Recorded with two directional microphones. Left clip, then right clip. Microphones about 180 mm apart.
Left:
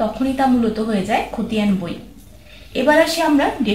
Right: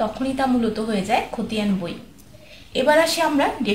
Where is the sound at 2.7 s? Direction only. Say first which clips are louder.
Left 2 dB; 35° right (ahead or behind).